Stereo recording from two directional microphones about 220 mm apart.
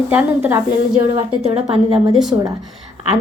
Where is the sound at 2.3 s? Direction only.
15° right (ahead or behind).